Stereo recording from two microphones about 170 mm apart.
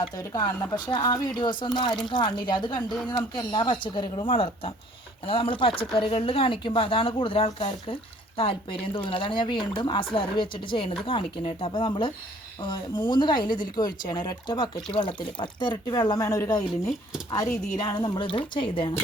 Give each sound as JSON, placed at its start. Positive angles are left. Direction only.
{"t": 0.0, "sound": "speech", "side_deg": 25}